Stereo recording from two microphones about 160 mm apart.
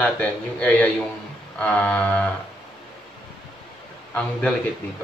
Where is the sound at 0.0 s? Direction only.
10° left (ahead or behind).